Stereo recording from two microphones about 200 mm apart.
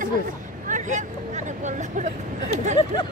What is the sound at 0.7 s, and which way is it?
Vehicle, 40° right (ahead or behind).